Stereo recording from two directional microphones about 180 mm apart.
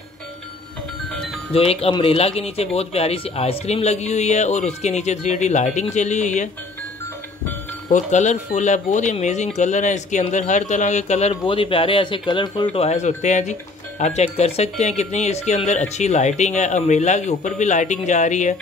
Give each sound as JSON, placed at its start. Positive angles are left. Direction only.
{"t": 1.5, "sound": "speech", "side_deg": 30}
{"t": 7.9, "sound": "speech", "side_deg": 40}